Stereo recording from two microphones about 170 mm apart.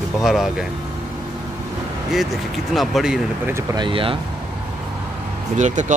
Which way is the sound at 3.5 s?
15° right (ahead or behind).